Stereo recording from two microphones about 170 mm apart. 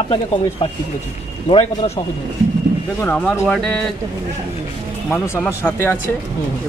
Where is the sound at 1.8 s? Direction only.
30° left (ahead or behind).